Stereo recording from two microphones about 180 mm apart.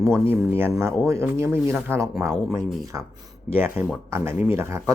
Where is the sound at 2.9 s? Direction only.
15° right (ahead or behind).